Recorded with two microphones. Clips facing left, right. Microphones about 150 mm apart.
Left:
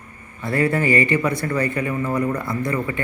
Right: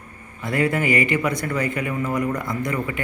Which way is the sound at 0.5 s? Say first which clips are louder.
Left 2 dB; 20° right (ahead or behind).